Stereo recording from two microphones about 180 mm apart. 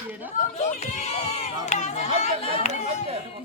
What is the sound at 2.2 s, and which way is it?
Chatter, 35° left (ahead or behind).